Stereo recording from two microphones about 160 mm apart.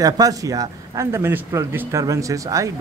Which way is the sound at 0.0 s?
20° right (ahead or behind).